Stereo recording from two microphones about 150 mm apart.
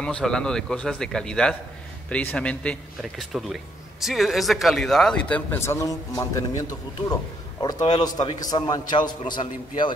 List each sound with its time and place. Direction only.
0.0 s a man's voice: 5° left (ahead or behind); by 9.9 s 30° left (ahead or behind)